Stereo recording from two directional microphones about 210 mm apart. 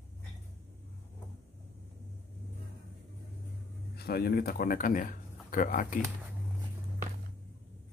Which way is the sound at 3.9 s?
50° left (ahead or behind).